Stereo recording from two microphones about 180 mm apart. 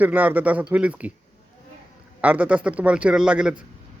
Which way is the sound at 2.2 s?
10° right (ahead or behind).